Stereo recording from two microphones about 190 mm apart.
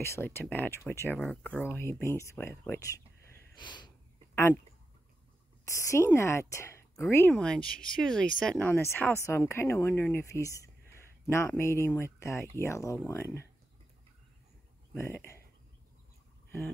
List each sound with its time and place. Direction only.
0.0 s speech: 10° left (ahead or behind)
3.5 s snort: 25° left (ahead or behind)
5.8 s speech: 15° left (ahead or behind)
15.0 s speech: 15° left (ahead or behind)